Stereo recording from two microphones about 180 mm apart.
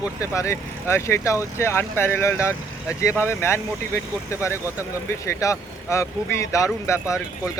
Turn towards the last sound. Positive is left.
turn(degrees=15)  # may be behind; listen again after turning